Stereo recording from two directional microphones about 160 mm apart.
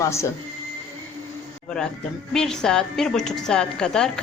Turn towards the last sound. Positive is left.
turn(degrees=5)  # may be behind; listen again after turning